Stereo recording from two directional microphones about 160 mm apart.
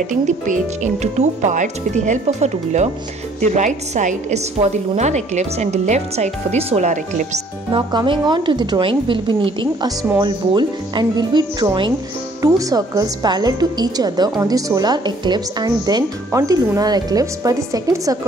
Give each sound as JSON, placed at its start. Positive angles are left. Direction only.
{"t": 1.0, "sound": "a woman's voice", "side_deg": -45}
{"t": 7.7, "sound": "a woman's voice", "side_deg": -30}